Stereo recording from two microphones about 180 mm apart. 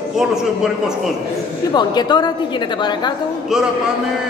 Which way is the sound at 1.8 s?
25° left (ahead or behind).